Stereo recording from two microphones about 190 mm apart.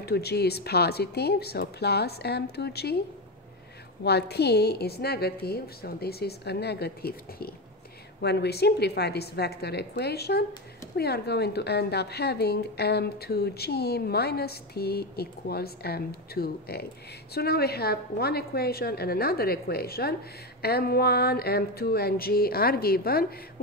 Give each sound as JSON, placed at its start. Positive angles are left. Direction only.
{"t": 0.0, "sound": "a woman's voice", "side_deg": 60}
{"t": 4.0, "sound": "a woman's voice", "side_deg": 60}
{"t": 20.6, "sound": "a sound", "side_deg": 55}